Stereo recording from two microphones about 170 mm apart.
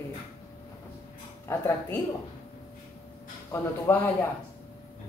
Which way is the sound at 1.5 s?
15° left (ahead or behind).